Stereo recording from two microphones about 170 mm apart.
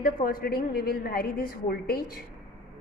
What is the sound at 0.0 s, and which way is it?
A woman's voice, 55° left (ahead or behind).